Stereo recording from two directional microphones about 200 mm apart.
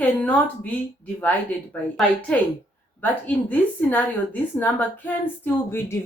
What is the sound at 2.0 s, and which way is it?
A woman's voice, 5° left (ahead or behind).